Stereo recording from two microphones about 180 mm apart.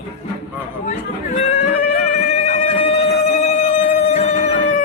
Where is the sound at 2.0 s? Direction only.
40° left (ahead or behind).